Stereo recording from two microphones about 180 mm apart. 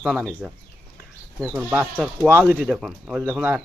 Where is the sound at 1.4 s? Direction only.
15° right (ahead or behind).